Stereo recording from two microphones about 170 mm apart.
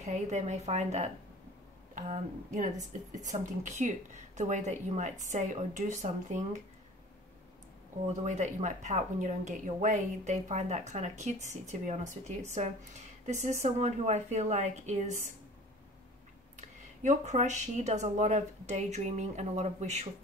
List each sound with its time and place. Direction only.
0.0 s a woman's voice: 40° right (ahead or behind)
8.1 s speech: 45° right (ahead or behind)
17.0 s speech: 45° right (ahead or behind)